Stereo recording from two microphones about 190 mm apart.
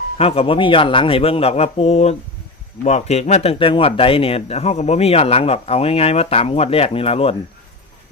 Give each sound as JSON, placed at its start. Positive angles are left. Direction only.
{"t": 0.2, "sound": "speech", "side_deg": 30}